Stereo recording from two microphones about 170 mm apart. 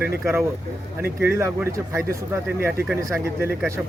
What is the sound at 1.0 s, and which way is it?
Speech, 15° right (ahead or behind).